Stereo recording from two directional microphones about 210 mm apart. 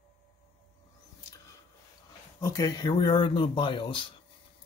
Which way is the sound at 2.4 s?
15° left (ahead or behind).